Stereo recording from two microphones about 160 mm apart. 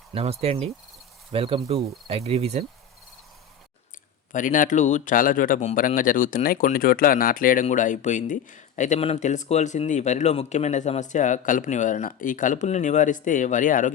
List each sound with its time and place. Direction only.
0.1 s speech: 40° right (ahead or behind)
4.3 s speech: 55° left (ahead or behind)